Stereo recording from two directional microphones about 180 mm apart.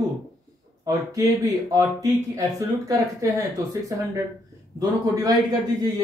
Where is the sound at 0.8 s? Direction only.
20° right (ahead or behind).